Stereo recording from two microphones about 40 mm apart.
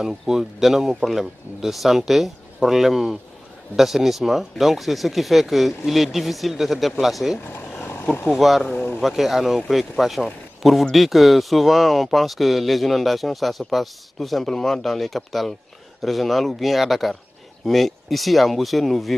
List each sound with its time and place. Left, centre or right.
0.0 s speech: centre
7.8 s vehicle: left
8.3 s speech: centre
8.7 s a sound: left
9.0 s speech: centre